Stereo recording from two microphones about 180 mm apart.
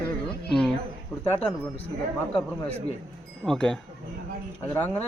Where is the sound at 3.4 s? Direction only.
5° left (ahead or behind).